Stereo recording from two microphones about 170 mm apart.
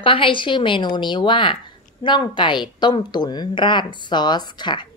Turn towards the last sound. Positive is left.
turn(degrees=25)  # may be behind; listen again after turning